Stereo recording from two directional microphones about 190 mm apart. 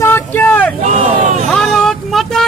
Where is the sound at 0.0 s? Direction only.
10° left (ahead or behind).